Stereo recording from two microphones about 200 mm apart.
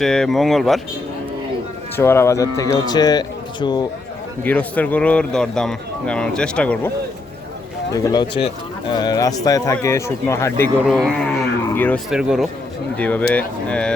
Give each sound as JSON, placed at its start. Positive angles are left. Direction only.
{"t": 0.0, "sound": "speech", "side_deg": 0}
{"t": 2.0, "sound": "speech", "side_deg": 10}
{"t": 4.4, "sound": "speech", "side_deg": 5}
{"t": 7.9, "sound": "speech", "side_deg": 20}
{"t": 10.8, "sound": "speech", "side_deg": 0}
{"t": 12.1, "sound": "speech", "side_deg": -5}
{"t": 13.0, "sound": "speech", "side_deg": 5}